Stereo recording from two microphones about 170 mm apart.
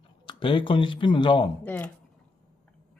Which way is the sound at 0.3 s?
30° left (ahead or behind).